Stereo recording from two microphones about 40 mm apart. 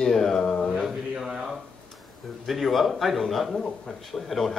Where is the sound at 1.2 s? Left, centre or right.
Centre.